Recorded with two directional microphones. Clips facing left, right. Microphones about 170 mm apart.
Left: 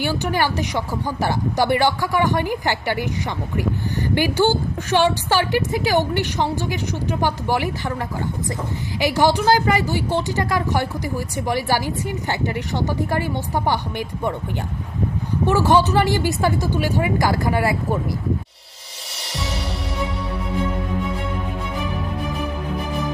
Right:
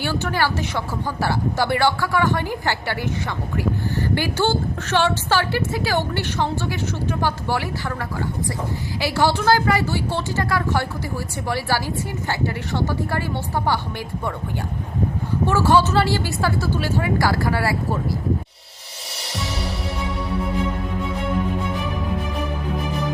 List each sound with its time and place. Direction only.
0.0 s a woman's voice: 15° left (ahead or behind)
15.4 s a woman's voice: 15° left (ahead or behind)